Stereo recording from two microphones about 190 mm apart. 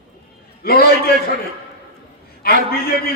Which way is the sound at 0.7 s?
55° left (ahead or behind).